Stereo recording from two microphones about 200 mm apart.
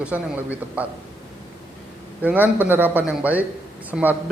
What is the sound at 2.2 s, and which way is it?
A man's voice, 10° right (ahead or behind).